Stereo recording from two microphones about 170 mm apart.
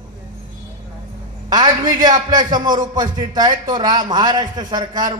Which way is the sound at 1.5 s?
25° right (ahead or behind).